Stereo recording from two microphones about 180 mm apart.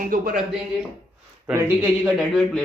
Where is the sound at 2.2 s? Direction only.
Centre (ahead or behind).